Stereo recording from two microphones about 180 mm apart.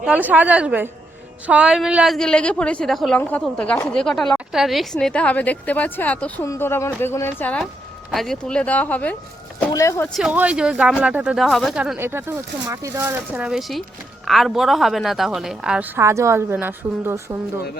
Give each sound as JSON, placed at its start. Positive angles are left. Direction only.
{"t": 0.0, "sound": "a woman's voice", "side_deg": -10}
{"t": 10.2, "sound": "a woman's voice", "side_deg": -5}
{"t": 16.0, "sound": "speech", "side_deg": -15}